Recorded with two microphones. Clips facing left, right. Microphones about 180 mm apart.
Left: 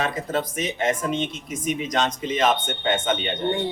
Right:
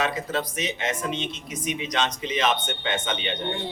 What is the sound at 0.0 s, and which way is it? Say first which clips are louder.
A man's voice: left 1 dB; 50° left (ahead or behind).